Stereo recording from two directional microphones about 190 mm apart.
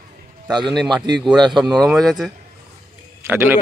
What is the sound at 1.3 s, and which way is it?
Speech, 25° right (ahead or behind).